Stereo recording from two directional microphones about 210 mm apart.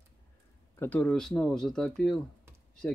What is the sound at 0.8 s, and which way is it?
Speech, 5° left (ahead or behind).